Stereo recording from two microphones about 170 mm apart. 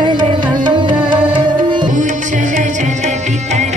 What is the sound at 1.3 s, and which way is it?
Tabla, 30° right (ahead or behind).